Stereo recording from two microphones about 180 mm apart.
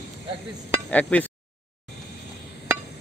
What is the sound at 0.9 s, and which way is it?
Speech, 10° left (ahead or behind).